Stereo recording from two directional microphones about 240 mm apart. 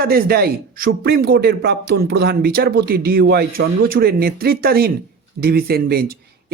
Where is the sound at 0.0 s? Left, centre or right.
Right.